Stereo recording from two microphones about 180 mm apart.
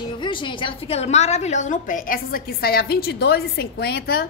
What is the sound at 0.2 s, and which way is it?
A woman's voice, 25° left (ahead or behind).